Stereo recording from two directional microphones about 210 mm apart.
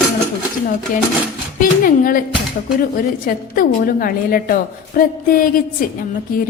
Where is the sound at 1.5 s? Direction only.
40° left (ahead or behind).